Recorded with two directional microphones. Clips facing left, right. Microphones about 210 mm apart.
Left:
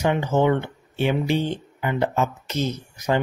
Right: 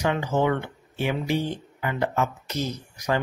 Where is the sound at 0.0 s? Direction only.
25° left (ahead or behind).